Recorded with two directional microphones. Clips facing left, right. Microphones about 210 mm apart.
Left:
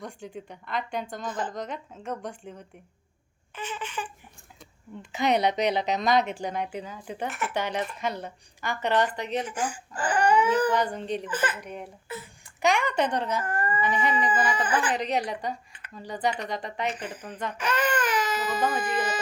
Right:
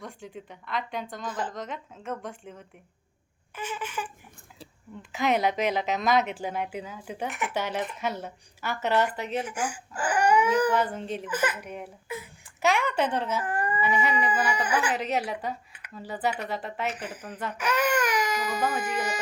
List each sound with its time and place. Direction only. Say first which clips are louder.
0.0 s a woman's voice: left 2 dB; centre (ahead or behind)
5.1 s a woman's voice: left 1 dB; centre (ahead or behind)
13.4 s speech: even; 15° right (ahead or behind)